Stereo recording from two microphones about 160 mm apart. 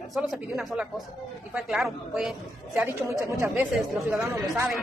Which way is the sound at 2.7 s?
15° right (ahead or behind).